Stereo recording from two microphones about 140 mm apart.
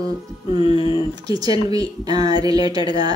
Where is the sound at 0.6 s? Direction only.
40° left (ahead or behind).